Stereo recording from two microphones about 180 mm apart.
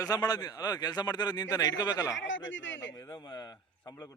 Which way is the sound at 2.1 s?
90° left.